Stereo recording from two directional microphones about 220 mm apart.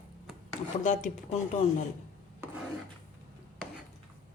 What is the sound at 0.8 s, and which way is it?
Speech, 35° left (ahead or behind).